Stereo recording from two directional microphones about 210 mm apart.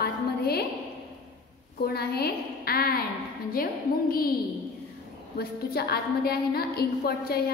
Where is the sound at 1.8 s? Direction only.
50° left (ahead or behind).